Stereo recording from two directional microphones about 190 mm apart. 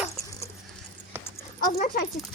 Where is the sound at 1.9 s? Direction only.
50° left (ahead or behind).